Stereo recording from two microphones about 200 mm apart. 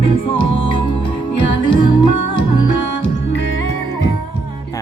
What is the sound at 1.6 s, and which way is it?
Music, 25° left (ahead or behind).